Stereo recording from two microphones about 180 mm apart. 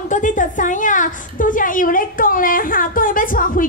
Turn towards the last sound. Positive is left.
turn(degrees=50)  # may be behind; listen again after turning